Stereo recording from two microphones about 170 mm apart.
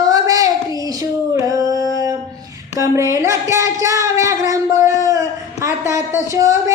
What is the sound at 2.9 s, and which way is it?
A woman's voice, 15° right (ahead or behind).